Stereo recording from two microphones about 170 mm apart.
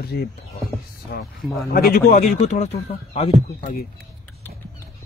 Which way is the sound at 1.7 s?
60° left (ahead or behind).